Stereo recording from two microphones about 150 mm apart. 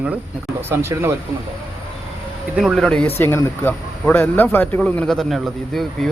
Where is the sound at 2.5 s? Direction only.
Centre (ahead or behind).